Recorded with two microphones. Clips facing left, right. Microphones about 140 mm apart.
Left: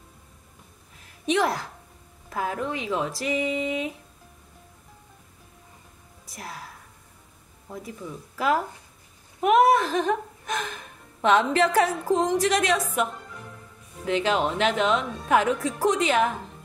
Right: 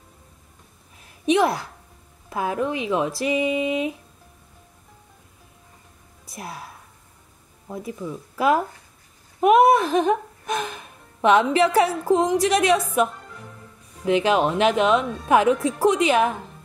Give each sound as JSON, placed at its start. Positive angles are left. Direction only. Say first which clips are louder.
{"t": 1.2, "sound": "a woman's voice", "louder": "right 4 dB", "side_deg": -15}
{"t": 6.3, "sound": "speech", "louder": "right 3 dB", "side_deg": -20}
{"t": 9.4, "sound": "speech", "louder": "right 3 dB", "side_deg": -15}